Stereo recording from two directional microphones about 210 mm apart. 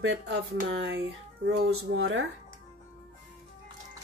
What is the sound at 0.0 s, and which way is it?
Speech, 60° right (ahead or behind).